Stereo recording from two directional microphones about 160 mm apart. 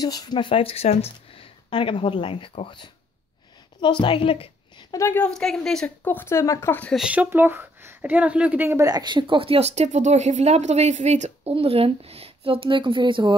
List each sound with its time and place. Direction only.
0.0 s a woman's voice: 25° left (ahead or behind)
4.9 s speech: 15° left (ahead or behind)
7.0 s speech: 10° right (ahead or behind); by 13.3 s 30° right (ahead or behind)